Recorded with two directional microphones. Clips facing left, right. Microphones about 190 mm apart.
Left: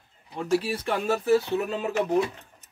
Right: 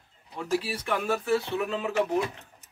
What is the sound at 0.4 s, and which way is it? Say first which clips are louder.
Speech: left 4 dB; 40° left (ahead or behind).